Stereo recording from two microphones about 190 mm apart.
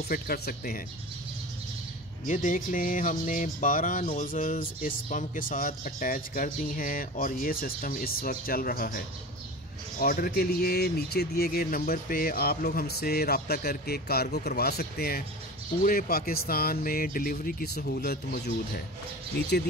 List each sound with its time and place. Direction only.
0.1 s speech: 50° left (ahead or behind)
2.2 s speech: 45° left (ahead or behind); by 19.5 s 60° left (ahead or behind)